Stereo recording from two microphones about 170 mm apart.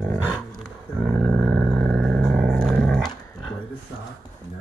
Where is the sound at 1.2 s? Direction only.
Centre (ahead or behind).